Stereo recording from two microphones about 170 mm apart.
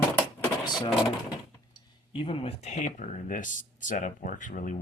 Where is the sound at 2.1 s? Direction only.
30° left (ahead or behind).